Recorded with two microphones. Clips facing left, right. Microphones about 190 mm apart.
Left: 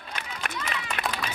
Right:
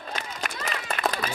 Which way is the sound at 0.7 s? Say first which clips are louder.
Right 6 dB; 40° right (ahead or behind).